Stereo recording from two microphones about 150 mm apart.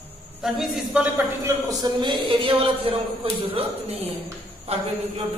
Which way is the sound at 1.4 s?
25° right (ahead or behind).